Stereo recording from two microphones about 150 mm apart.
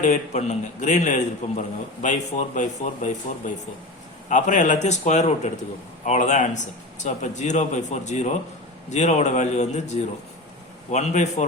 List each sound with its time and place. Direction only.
0.0 s a man's voice: 50° left (ahead or behind)